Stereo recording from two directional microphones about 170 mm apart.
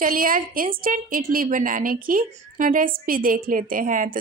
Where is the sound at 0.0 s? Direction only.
55° right (ahead or behind).